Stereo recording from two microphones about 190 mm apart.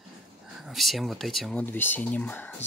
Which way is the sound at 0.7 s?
Centre (ahead or behind).